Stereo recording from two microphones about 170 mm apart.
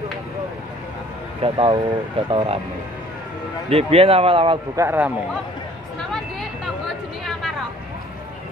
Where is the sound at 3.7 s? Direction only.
35° right (ahead or behind).